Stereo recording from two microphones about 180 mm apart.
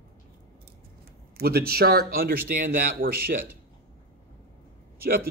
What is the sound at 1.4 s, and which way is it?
Speech, 60° right (ahead or behind).